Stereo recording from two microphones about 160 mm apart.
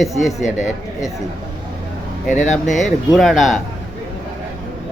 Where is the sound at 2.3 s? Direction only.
50° left (ahead or behind).